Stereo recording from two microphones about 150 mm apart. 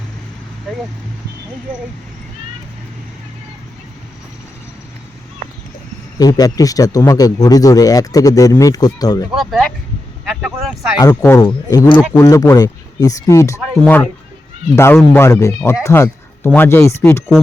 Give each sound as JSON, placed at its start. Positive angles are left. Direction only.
{"t": 6.1, "sound": "speech", "side_deg": 25}
{"t": 9.3, "sound": "speech", "side_deg": 0}
{"t": 11.0, "sound": "speech", "side_deg": 20}